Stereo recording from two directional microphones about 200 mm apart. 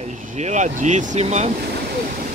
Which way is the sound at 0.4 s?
35° right (ahead or behind).